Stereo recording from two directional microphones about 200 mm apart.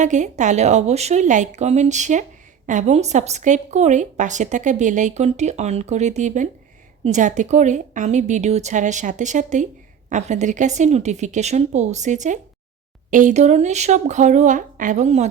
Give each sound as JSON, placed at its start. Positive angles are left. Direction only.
{"t": 0.0, "sound": "a woman's voice", "side_deg": -35}